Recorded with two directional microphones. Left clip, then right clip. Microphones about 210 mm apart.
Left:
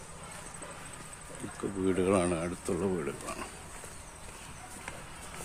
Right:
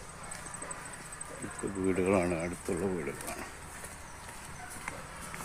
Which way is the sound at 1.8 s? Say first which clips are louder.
Left 1 dB; 10° left (ahead or behind).